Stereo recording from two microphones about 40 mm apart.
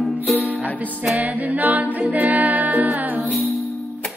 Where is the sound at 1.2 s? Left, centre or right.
Right.